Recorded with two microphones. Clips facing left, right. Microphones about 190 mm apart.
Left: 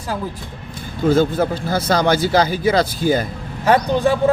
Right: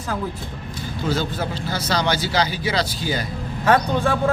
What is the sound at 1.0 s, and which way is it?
A man's voice, 50° left (ahead or behind).